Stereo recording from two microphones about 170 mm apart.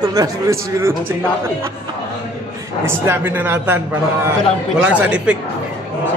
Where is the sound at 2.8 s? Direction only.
15° right (ahead or behind).